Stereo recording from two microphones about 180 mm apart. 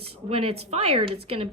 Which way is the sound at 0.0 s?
35° right (ahead or behind).